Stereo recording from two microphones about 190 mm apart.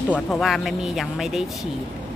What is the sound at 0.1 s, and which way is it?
Speech, centre (ahead or behind).